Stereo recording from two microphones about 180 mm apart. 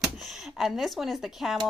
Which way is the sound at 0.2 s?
Centre (ahead or behind).